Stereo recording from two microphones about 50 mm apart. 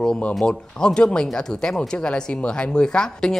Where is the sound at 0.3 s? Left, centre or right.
Centre.